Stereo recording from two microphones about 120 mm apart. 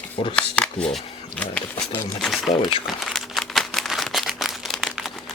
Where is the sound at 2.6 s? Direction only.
45° left (ahead or behind).